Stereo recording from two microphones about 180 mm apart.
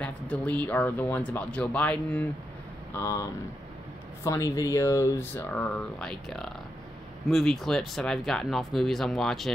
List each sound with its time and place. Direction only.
0.0 s speech: 10° left (ahead or behind)